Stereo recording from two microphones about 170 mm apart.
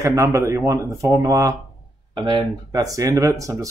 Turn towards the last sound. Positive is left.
turn(degrees=-20)  # may be behind; listen again after turning